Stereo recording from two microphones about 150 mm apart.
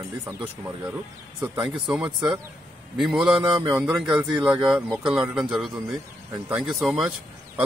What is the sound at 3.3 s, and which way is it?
Speech, 30° right (ahead or behind).